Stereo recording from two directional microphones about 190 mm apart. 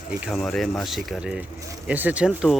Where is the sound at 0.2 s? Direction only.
Centre (ahead or behind).